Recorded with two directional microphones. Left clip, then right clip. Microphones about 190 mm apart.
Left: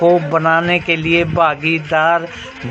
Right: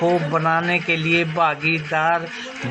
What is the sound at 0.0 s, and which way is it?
A man's voice, 30° left (ahead or behind).